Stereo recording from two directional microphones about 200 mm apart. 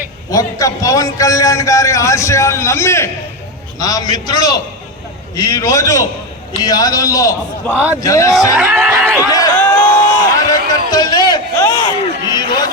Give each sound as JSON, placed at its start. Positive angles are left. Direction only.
{"t": 0.3, "sound": "a man's voice", "side_deg": 15}
{"t": 7.7, "sound": "a man's voice", "side_deg": -5}
{"t": 8.0, "sound": "a man's voice", "side_deg": 15}
{"t": 8.5, "sound": "a sound", "side_deg": -5}
{"t": 9.3, "sound": "a sound", "side_deg": 10}
{"t": 12.3, "sound": "chatter", "side_deg": 20}